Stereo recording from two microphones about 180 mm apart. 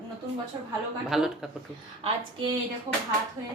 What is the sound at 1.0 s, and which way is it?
Speech, centre (ahead or behind).